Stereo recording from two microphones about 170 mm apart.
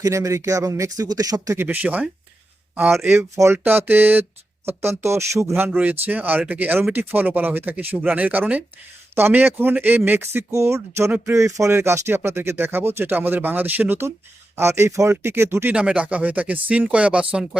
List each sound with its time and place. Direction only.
0.0 s speech: 20° right (ahead or behind)